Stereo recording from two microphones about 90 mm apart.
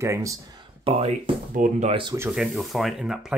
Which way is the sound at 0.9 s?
90° right.